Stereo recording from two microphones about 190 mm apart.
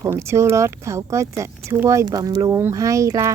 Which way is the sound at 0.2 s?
15° right (ahead or behind).